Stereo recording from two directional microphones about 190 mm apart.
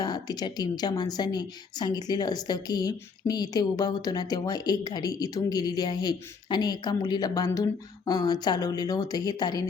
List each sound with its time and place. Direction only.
0.0 s a woman's voice: 20° left (ahead or behind)